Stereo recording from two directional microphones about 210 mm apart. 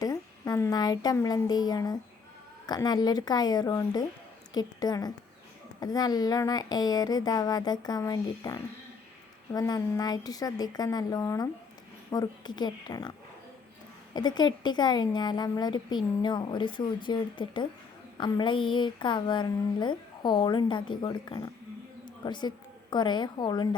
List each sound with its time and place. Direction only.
0.0 s a woman's voice: 15° left (ahead or behind)